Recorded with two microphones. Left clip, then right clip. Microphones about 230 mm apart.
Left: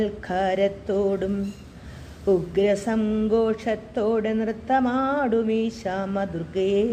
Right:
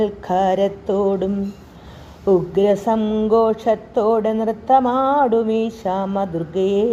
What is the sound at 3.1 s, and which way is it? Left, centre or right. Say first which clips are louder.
Mantra: right 6 dB; right.